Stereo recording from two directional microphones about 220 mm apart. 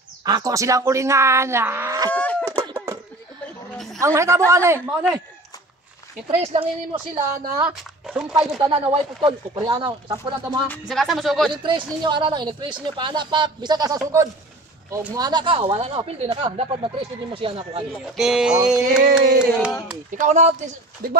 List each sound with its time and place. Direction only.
0.2 s speech: 15° right (ahead or behind)
2.4 s a sound: 15° right (ahead or behind)
3.7 s a sound: centre (ahead or behind)
4.0 s speech: 15° right (ahead or behind)
6.4 s speech: 25° right (ahead or behind)
7.5 s speech: 5° right (ahead or behind)
8.5 s speech: 25° right (ahead or behind)
10.7 s speech: centre (ahead or behind)
11.5 s speech: 20° right (ahead or behind)
17.9 s speech: 5° right (ahead or behind)
20.1 s speech: 35° right (ahead or behind)
21.0 s speech: 40° right (ahead or behind)